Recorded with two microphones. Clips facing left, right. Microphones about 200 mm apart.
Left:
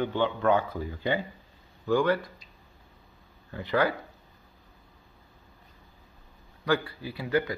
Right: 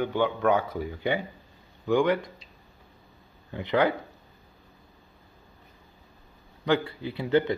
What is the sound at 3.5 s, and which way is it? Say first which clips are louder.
Speech: right 2 dB; 20° right (ahead or behind).